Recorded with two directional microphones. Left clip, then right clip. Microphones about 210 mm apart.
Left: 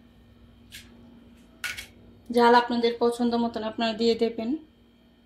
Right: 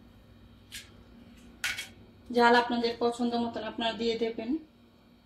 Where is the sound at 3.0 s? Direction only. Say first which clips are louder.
Left 5 dB; 45° left (ahead or behind).